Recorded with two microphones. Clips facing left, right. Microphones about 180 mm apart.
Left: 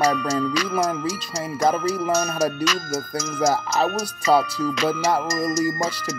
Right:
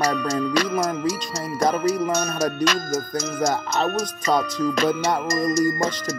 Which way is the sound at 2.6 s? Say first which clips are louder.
Right 2 dB; 60° right (ahead or behind).